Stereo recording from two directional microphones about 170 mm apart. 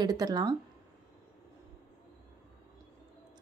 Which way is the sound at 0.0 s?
20° right (ahead or behind).